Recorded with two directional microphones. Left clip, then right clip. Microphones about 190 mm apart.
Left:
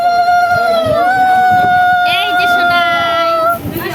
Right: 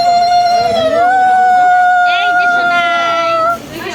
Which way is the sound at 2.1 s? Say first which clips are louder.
Right 1 dB; 35° left (ahead or behind).